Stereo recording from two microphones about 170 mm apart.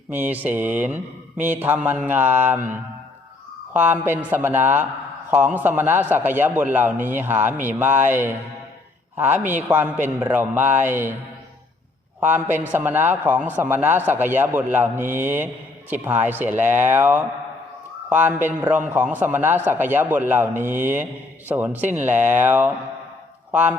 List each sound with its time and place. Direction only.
0.1 s a man's voice: 10° right (ahead or behind)
12.2 s a man's voice: 10° right (ahead or behind)